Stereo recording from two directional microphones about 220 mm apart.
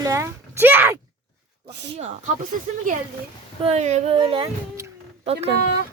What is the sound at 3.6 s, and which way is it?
Speech, 30° right (ahead or behind).